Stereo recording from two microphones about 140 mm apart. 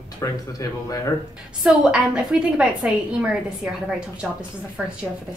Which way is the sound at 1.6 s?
5° right (ahead or behind).